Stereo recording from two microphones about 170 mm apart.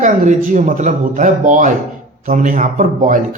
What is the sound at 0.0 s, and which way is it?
Speech, 45° right (ahead or behind).